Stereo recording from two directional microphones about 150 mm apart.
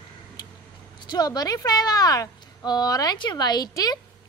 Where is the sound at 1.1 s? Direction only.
25° left (ahead or behind).